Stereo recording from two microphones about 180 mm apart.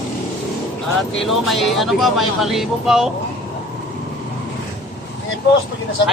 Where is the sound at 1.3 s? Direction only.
Centre (ahead or behind).